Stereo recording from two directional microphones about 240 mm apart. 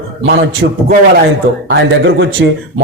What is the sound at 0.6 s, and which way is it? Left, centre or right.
Speech, right.